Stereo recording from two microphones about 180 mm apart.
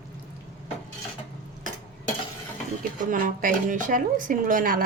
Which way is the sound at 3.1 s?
50° right (ahead or behind).